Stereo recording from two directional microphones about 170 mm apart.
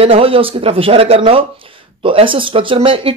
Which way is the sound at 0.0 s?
35° right (ahead or behind).